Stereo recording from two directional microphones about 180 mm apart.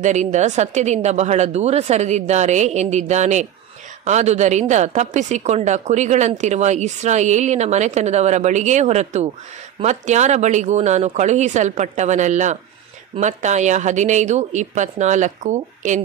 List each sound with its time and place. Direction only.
0.0 s a woman's voice: 40° right (ahead or behind)